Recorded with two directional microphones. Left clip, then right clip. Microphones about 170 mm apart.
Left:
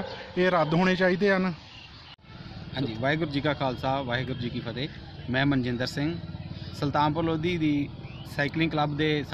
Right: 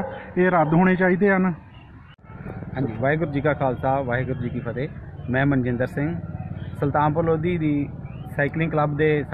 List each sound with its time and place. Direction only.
0.4 s speech: 15° left (ahead or behind)
2.7 s speech: 15° left (ahead or behind)